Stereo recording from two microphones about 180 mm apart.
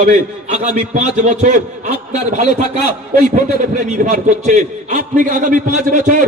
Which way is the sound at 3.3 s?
45° right (ahead or behind).